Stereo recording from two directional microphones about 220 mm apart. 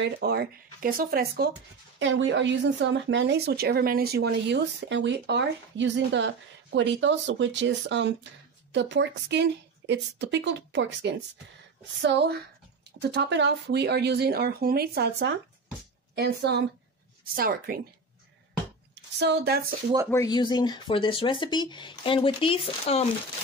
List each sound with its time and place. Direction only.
0.0 s speech: 50° right (ahead or behind)
2.0 s a woman's voice: 60° right (ahead or behind); by 17.8 s 40° right (ahead or behind)
19.1 s speech: 50° right (ahead or behind)
20.1 s speech: 15° left (ahead or behind)